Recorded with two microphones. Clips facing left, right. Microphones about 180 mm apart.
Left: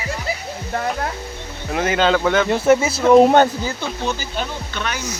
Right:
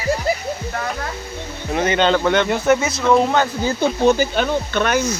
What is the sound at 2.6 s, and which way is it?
Speech, 30° left (ahead or behind).